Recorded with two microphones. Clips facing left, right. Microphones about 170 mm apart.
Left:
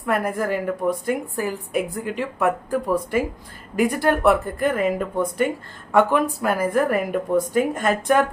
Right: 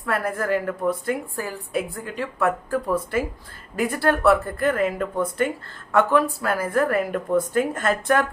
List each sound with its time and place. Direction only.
0.0 s a woman's voice: 15° left (ahead or behind)